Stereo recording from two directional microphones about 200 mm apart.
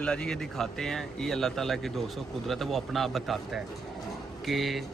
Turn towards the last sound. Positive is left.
turn(degrees=0)  # may be behind; listen again after turning